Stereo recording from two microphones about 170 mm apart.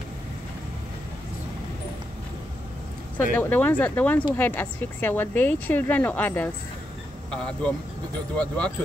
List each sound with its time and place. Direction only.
3.3 s a woman's voice: 10° left (ahead or behind)